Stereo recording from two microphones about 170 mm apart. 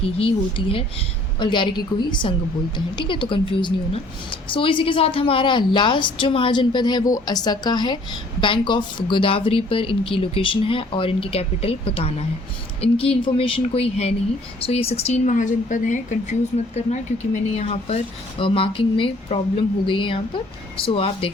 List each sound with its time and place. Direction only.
0.0 s a woman's voice: 35° left (ahead or behind)